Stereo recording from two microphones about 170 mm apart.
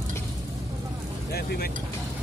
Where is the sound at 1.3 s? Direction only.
70° left (ahead or behind).